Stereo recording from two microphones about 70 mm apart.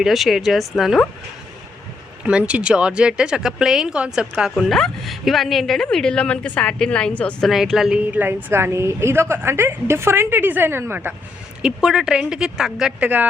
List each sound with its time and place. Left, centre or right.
0.0 s speech: centre
2.2 s speech: centre
4.5 s a woman's voice: centre
7.4 s speech: centre
7.9 s a woman's voice: right
11.6 s speech: centre
13.0 s speech: centre